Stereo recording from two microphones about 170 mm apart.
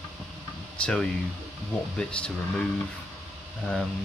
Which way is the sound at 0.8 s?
5° left (ahead or behind).